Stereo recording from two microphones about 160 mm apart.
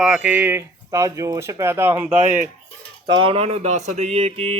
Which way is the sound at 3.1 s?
30° right (ahead or behind).